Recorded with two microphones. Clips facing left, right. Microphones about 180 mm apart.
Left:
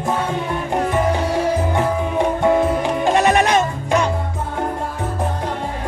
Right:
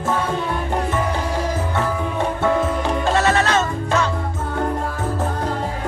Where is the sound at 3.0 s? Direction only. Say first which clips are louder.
Left 3 dB; 15° left (ahead or behind).